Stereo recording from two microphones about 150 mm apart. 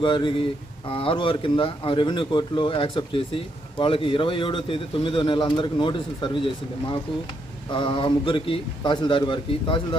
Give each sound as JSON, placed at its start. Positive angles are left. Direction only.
{"t": 0.0, "sound": "speech", "side_deg": 35}
{"t": 7.7, "sound": "speech", "side_deg": 35}